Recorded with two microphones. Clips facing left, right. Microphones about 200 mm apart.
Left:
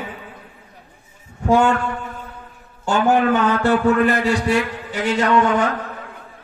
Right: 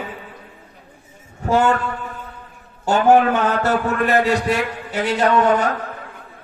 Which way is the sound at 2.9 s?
40° right (ahead or behind).